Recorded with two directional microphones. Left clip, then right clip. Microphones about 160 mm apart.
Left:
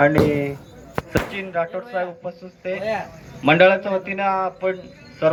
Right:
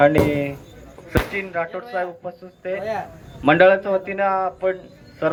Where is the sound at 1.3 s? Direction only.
55° left (ahead or behind).